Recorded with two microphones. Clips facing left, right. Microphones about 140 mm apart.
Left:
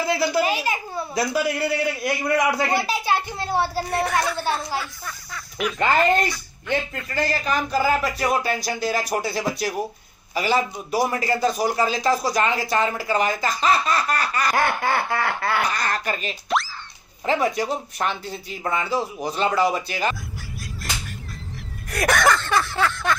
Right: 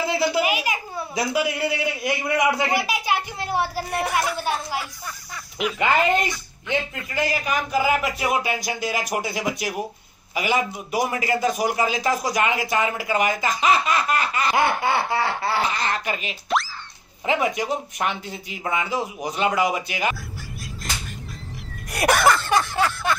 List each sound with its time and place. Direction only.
0.2 s a man's voice: 15° right (ahead or behind)
3.6 s speech: 30° left (ahead or behind)
4.0 s a man's voice: 15° right (ahead or behind)
16.4 s speech: centre (ahead or behind)
17.3 s a man's voice: 15° right (ahead or behind)
22.2 s a man's voice: 10° right (ahead or behind)